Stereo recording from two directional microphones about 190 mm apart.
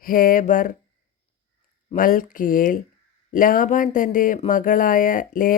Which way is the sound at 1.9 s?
45° left (ahead or behind).